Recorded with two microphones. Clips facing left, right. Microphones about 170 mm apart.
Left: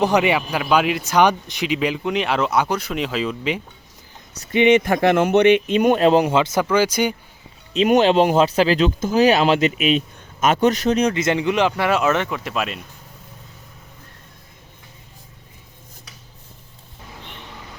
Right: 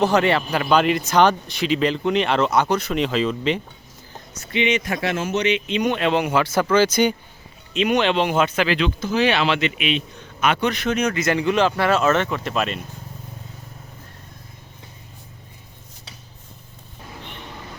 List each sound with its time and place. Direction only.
0.0 s a man's voice: 15° left (ahead or behind)
4.4 s speech: 50° left (ahead or behind)
6.3 s a man's voice: 20° left (ahead or behind)
7.7 s a man's voice: 40° left (ahead or behind); by 12.8 s 5° left (ahead or behind)